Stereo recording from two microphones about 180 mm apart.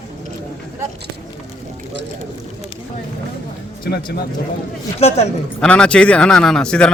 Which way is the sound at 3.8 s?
60° left (ahead or behind).